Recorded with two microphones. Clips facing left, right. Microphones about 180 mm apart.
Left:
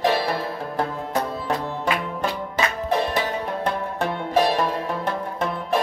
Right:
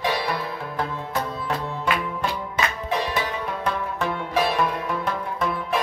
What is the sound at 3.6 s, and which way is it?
Music, 35° left (ahead or behind).